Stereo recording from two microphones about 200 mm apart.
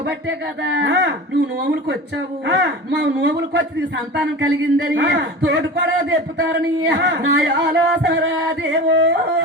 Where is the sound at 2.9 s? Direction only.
60° right (ahead or behind).